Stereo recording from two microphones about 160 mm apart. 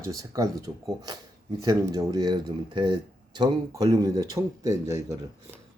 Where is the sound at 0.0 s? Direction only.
20° right (ahead or behind).